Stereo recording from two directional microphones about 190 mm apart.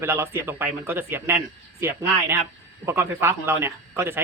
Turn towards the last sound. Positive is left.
turn(degrees=-10)  # may be behind; listen again after turning